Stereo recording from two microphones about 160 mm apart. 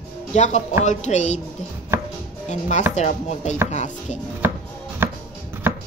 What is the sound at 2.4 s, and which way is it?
Speech, 50° left (ahead or behind).